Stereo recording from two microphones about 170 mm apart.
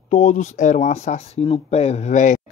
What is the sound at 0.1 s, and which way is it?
Speech, 45° left (ahead or behind).